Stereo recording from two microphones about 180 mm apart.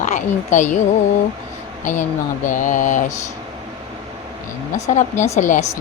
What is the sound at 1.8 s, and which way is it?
Speech, 45° left (ahead or behind).